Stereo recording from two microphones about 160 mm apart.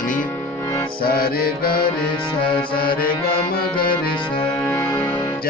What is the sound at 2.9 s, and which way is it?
Music, 70° left (ahead or behind).